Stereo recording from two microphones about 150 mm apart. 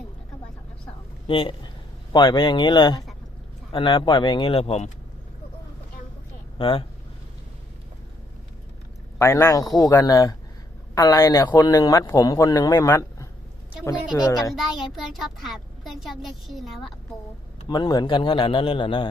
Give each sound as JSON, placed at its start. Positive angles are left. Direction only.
{"t": 1.3, "sound": "a man's voice", "side_deg": 35}
{"t": 6.6, "sound": "a man's voice", "side_deg": 35}
{"t": 9.1, "sound": "a man's voice", "side_deg": 20}
{"t": 14.5, "sound": "a child's voice", "side_deg": 0}
{"t": 17.7, "sound": "a man's voice", "side_deg": 25}